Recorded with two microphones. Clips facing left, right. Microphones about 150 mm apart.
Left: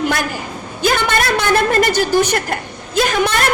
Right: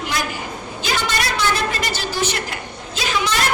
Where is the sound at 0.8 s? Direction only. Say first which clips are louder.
Left 7 dB; 50° left (ahead or behind).